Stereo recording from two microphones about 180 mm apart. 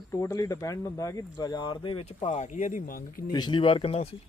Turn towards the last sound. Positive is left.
turn(degrees=35)  # may be behind; listen again after turning